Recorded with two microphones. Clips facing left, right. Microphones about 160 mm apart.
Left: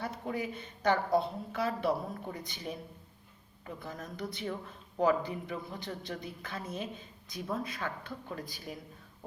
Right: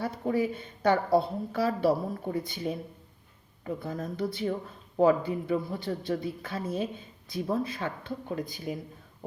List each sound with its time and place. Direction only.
0.0 s a woman's voice: 35° right (ahead or behind); by 8.8 s 20° right (ahead or behind)